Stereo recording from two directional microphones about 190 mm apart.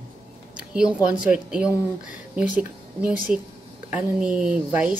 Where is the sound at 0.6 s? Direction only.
5° right (ahead or behind).